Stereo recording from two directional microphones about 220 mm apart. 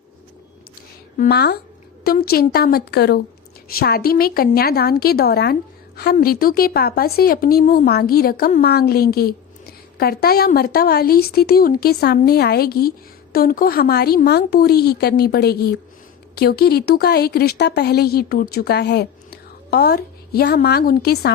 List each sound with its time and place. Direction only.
1.2 s a woman's voice: 45° left (ahead or behind)